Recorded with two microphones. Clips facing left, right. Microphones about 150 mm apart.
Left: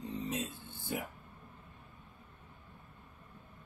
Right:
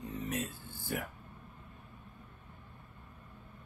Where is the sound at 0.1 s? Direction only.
25° left (ahead or behind).